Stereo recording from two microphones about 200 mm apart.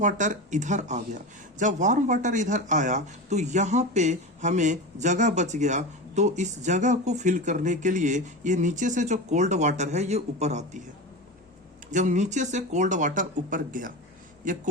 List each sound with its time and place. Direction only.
0.0 s speech: 40° right (ahead or behind)
11.9 s speech: 40° right (ahead or behind)